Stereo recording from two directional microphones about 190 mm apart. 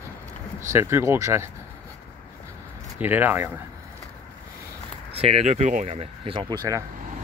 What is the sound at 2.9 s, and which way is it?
Speech, 10° right (ahead or behind).